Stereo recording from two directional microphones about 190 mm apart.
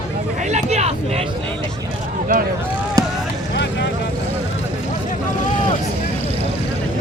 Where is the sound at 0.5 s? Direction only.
35° right (ahead or behind).